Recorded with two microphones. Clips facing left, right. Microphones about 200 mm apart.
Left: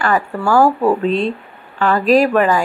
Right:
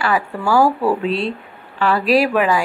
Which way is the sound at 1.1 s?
45° left (ahead or behind).